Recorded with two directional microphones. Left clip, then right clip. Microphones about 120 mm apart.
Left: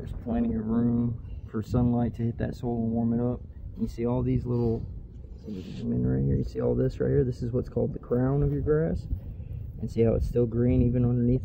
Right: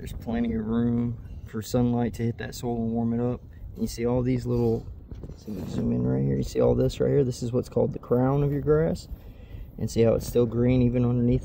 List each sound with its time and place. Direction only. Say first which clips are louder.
0.0 s speech: even; 15° right (ahead or behind)
5.9 s speech: right 2 dB; 25° right (ahead or behind)
6.1 s speech: right 2 dB; 35° right (ahead or behind)
6.4 s speech: right 6 dB; 20° right (ahead or behind)